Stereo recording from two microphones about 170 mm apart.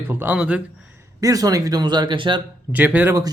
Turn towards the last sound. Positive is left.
turn(degrees=-15)  # may be behind; listen again after turning